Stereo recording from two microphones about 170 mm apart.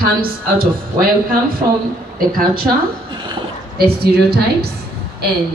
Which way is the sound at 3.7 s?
70° right (ahead or behind).